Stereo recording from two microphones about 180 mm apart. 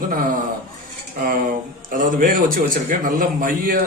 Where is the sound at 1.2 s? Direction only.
50° right (ahead or behind).